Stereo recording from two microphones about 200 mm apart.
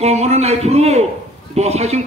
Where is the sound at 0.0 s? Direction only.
30° right (ahead or behind).